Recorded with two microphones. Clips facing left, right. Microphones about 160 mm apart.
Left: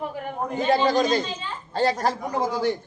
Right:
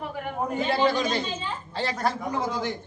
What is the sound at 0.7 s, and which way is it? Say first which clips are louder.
A man's voice: left 5 dB; 40° left (ahead or behind).